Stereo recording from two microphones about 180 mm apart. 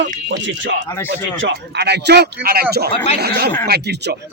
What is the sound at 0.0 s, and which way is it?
Speech, 85° right.